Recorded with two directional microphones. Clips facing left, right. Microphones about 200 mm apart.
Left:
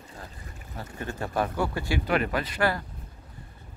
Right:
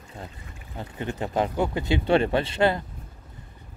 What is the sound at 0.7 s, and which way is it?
Speech, 20° right (ahead or behind).